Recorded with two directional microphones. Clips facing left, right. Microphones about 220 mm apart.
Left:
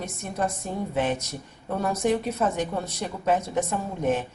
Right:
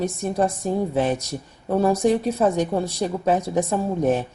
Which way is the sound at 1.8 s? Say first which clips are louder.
Right 5 dB; 35° right (ahead or behind).